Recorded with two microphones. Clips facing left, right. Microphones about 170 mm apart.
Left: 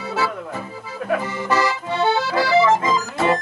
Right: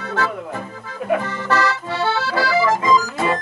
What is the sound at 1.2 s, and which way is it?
Accordion, 10° left (ahead or behind).